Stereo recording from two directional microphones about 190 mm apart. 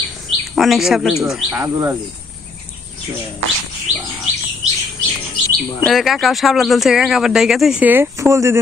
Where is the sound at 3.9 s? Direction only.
35° right (ahead or behind).